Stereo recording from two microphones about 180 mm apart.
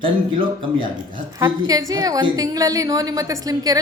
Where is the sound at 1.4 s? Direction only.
20° right (ahead or behind).